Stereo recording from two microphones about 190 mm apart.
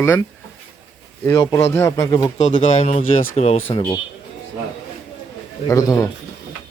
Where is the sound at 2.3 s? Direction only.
40° left (ahead or behind).